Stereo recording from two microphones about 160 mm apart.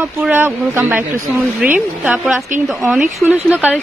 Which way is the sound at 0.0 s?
10° right (ahead or behind).